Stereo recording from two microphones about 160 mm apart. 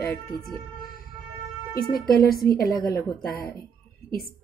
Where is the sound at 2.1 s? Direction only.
70° left (ahead or behind).